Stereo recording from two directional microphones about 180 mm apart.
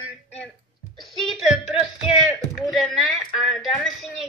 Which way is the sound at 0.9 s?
Centre (ahead or behind).